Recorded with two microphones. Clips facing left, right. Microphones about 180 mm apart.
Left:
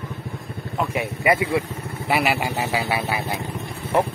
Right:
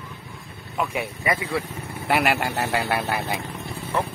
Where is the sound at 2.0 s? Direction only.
5° left (ahead or behind).